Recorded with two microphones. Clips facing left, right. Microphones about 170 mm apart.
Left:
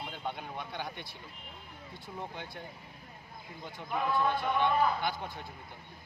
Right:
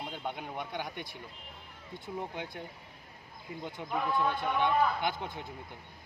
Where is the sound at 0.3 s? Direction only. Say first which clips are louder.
Even; 15° right (ahead or behind).